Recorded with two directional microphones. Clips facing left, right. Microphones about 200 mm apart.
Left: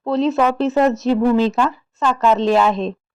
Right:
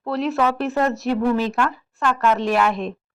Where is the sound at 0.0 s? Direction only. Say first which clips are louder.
Left 4 dB; 20° left (ahead or behind).